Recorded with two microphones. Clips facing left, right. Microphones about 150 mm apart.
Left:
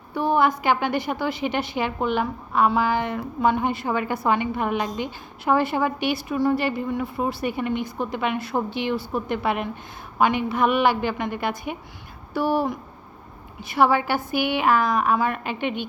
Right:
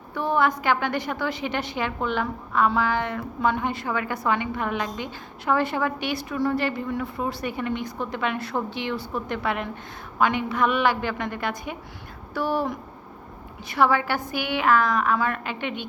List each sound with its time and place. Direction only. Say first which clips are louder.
0.1 s a woman's voice: left 2 dB; 10° left (ahead or behind)
6.6 s a woman's voice: left 2 dB; 5° left (ahead or behind)
13.7 s a woman's voice: left 2 dB; 10° left (ahead or behind)